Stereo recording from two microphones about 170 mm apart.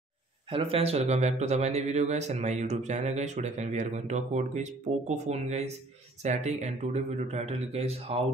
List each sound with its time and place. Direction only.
0.5 s a man's voice: 35° right (ahead or behind)